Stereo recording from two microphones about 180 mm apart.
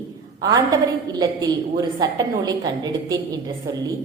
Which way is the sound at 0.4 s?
20° right (ahead or behind).